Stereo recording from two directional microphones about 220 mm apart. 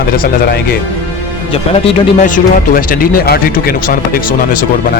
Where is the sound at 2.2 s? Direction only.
35° left (ahead or behind).